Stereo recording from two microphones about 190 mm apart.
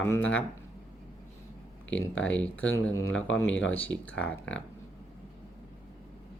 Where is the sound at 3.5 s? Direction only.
80° left.